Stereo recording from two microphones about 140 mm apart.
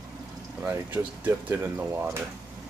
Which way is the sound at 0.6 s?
10° right (ahead or behind).